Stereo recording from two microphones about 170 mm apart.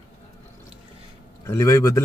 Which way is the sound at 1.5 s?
15° left (ahead or behind).